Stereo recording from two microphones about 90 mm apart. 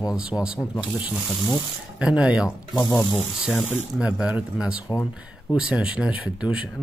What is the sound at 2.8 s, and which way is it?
Speech, 40° left (ahead or behind).